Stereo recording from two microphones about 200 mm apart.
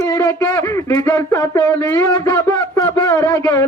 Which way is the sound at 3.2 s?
20° left (ahead or behind).